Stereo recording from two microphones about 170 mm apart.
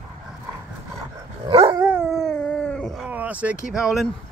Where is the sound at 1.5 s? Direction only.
30° right (ahead or behind).